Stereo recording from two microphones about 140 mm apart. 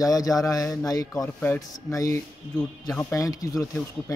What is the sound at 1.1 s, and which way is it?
Speech, 10° left (ahead or behind).